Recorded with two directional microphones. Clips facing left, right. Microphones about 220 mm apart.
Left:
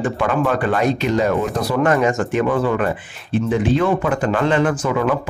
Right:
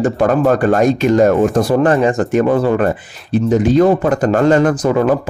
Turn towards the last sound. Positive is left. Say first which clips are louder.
# right 5 dB
turn(degrees=-40)  # may be behind; listen again after turning